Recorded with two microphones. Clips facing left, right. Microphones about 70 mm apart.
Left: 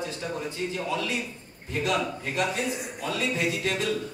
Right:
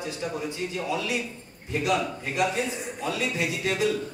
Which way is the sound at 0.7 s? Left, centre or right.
Centre.